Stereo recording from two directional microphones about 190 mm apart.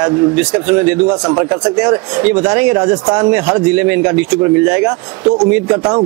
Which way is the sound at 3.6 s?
5° right (ahead or behind).